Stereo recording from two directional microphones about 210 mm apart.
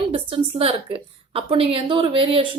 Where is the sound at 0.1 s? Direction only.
25° right (ahead or behind).